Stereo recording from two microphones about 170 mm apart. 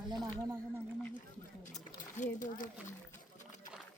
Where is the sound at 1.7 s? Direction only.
45° left (ahead or behind).